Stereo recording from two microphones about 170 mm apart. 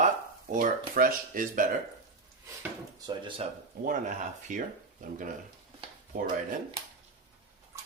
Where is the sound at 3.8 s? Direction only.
50° right (ahead or behind).